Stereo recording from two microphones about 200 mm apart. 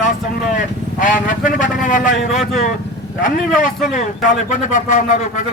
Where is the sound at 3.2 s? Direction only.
40° left (ahead or behind).